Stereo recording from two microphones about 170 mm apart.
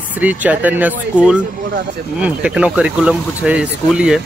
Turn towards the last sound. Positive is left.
turn(degrees=-5)  # may be behind; listen again after turning